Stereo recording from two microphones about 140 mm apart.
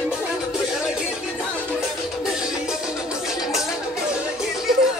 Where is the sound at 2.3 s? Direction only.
5° right (ahead or behind).